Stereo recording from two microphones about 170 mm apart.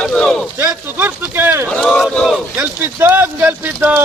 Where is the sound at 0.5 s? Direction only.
10° right (ahead or behind).